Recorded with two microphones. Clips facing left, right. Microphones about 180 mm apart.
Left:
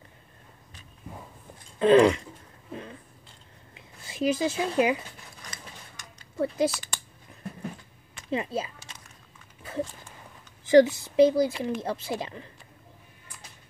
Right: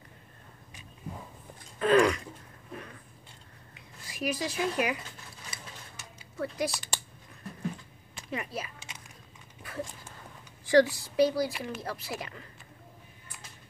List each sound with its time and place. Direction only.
1.8 s speech: 25° left (ahead or behind)
2.7 s a sound: 25° left (ahead or behind)
3.7 s speech: 25° left (ahead or behind)
5.4 s a sound: 5° right (ahead or behind)
6.3 s speech: 25° left (ahead or behind)
8.3 s speech: 25° left (ahead or behind)
10.6 s speech: 20° left (ahead or behind)